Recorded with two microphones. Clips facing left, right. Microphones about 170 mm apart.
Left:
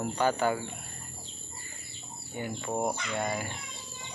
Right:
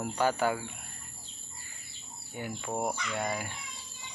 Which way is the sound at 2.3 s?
5° right (ahead or behind).